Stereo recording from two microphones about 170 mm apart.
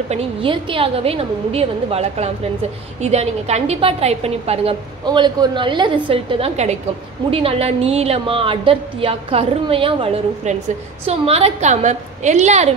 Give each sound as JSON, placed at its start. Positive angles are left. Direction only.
{"t": 0.1, "sound": "a woman's voice", "side_deg": -30}
{"t": 5.0, "sound": "a man's voice", "side_deg": -25}